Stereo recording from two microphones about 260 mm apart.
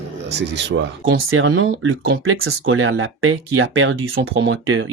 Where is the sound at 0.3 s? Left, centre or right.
Right.